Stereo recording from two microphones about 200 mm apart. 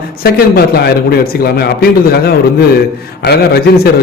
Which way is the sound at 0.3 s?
50° left (ahead or behind).